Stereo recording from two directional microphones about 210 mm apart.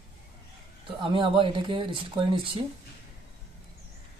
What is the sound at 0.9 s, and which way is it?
Speech, 25° right (ahead or behind).